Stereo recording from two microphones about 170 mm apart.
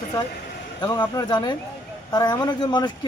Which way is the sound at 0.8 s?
25° left (ahead or behind).